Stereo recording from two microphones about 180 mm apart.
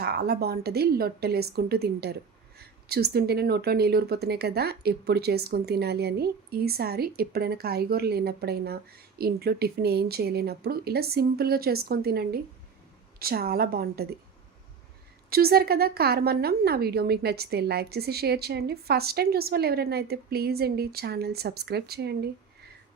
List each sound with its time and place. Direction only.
0.0 s speech: 65° right (ahead or behind)
15.3 s speech: 60° right (ahead or behind)